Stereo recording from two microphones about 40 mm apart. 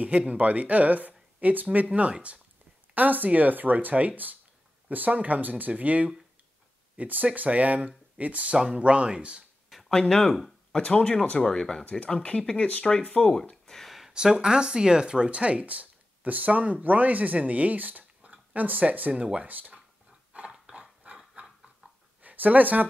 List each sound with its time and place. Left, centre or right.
0.3 s speech: right
1.9 s speech: right
2.9 s speech: right
9.8 s speech: centre
12.1 s speech: left
13.7 s a sound: centre
14.4 s speech: right
19.1 s speech: right
19.4 s speech: right
20.3 s dog: right
21.0 s a sound: right
22.2 s speech: right